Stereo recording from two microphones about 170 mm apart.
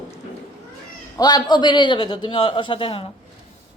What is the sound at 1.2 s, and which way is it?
A man's voice, 25° left (ahead or behind).